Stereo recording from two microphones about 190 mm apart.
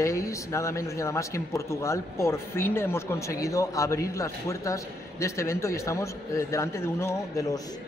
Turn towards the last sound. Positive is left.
turn(degrees=15)  # may be behind; listen again after turning